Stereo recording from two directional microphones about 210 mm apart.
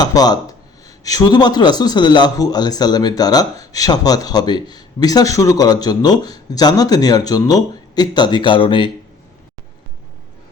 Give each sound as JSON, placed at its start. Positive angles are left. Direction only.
{"t": 0.0, "sound": "a man's voice", "side_deg": 20}